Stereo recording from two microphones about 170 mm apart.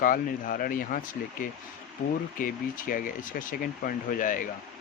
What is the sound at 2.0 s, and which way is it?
Speech, 65° left (ahead or behind).